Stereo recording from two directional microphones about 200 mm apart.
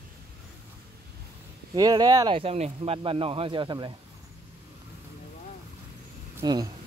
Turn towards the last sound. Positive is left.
turn(degrees=-20)  # may be behind; listen again after turning